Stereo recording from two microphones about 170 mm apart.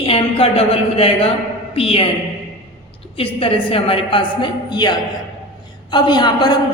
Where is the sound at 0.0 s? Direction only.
35° left (ahead or behind).